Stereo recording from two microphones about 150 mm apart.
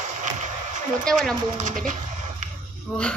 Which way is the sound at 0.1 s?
55° right (ahead or behind).